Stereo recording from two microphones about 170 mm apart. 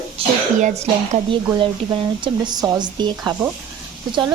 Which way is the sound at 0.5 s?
45° right (ahead or behind).